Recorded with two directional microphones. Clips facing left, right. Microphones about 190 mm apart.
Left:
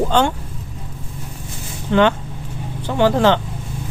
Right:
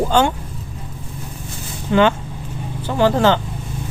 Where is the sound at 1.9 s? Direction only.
5° right (ahead or behind).